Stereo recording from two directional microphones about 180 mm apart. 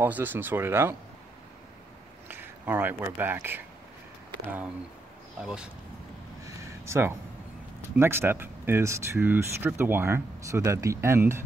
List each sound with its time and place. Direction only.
0.0 s speech: 10° right (ahead or behind)
2.2 s speech: 10° right (ahead or behind)
5.4 s speech: 5° right (ahead or behind)
6.4 s a sound: 15° right (ahead or behind)
7.9 s speech: 10° right (ahead or behind)